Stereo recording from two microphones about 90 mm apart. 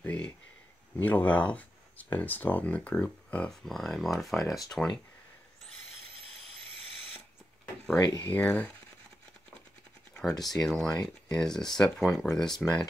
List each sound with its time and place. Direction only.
0.0 s a sound: 15° left (ahead or behind)
0.9 s speech: 20° left (ahead or behind)
3.6 s speech: 5° left (ahead or behind)
8.0 s speech: 50° left (ahead or behind)
8.3 s speech: 15° left (ahead or behind)
10.4 s speech: 5° left (ahead or behind)